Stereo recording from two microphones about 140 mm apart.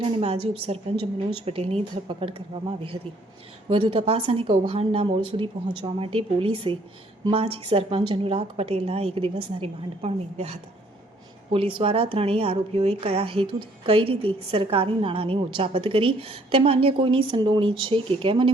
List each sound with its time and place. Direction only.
0.0 s a woman's voice: 45° right (ahead or behind)